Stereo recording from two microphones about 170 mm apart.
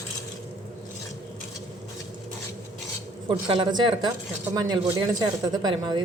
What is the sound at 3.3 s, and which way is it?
A woman's voice, 25° right (ahead or behind).